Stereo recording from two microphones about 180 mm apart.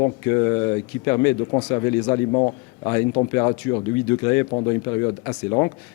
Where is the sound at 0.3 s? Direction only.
15° left (ahead or behind).